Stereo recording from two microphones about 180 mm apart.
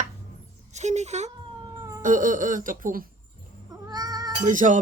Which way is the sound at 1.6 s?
20° right (ahead or behind).